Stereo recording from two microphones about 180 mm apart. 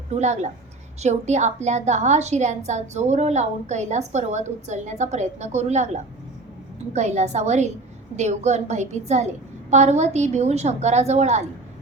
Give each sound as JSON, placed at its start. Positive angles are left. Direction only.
{"t": 0.1, "sound": "a woman's voice", "side_deg": -40}
{"t": 6.9, "sound": "a woman's voice", "side_deg": -40}